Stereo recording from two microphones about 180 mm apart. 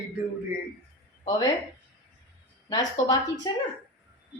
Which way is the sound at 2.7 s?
25° left (ahead or behind).